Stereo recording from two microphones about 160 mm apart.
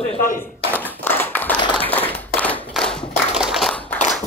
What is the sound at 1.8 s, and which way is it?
Clapping, 10° left (ahead or behind).